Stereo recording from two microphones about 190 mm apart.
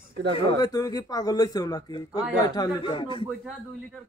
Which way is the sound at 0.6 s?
20° left (ahead or behind).